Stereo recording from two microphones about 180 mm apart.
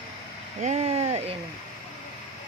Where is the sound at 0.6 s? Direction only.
40° right (ahead or behind).